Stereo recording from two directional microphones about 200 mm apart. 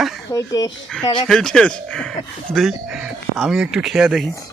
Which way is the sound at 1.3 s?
5° left (ahead or behind).